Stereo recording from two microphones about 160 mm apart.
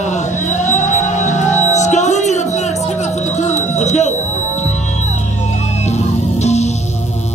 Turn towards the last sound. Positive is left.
turn(degrees=45)  # may be behind; listen again after turning